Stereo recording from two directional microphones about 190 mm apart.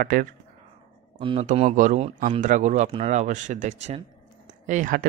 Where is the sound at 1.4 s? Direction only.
40° right (ahead or behind).